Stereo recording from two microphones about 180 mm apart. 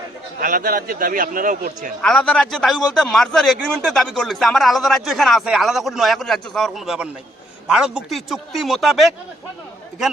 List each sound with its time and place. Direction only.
0.3 s speech: 50° right (ahead or behind)
2.0 s a man's voice: 5° left (ahead or behind)